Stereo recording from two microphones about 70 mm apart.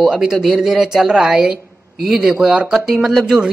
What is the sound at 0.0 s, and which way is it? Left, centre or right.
Speech, centre.